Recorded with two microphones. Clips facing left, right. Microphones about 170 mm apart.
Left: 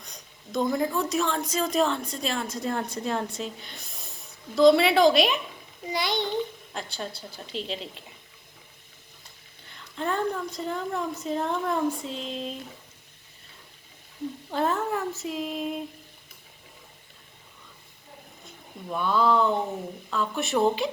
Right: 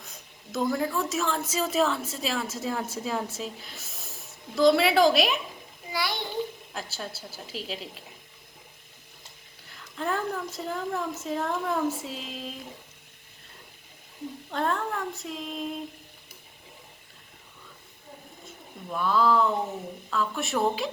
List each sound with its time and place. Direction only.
0.0 s a sound: 5° right (ahead or behind)
0.9 s a woman's voice: centre (ahead or behind)
5.9 s a child's voice: 20° left (ahead or behind)
6.7 s a woman's voice: 5° right (ahead or behind)
9.6 s a woman's voice: centre (ahead or behind)
14.5 s a woman's voice: 5° left (ahead or behind)
18.9 s a woman's voice: centre (ahead or behind)